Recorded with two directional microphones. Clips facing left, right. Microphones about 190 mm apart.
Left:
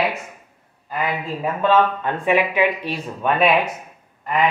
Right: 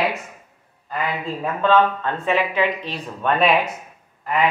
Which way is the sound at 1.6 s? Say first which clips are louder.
Even; 10° left (ahead or behind).